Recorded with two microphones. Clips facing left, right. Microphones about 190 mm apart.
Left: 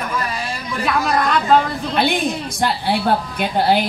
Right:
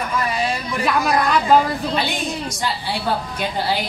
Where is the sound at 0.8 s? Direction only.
5° right (ahead or behind).